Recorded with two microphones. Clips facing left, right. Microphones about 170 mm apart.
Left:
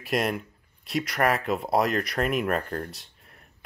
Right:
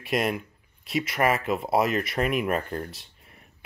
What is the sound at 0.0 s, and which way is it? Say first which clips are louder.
Speech: even; centre (ahead or behind).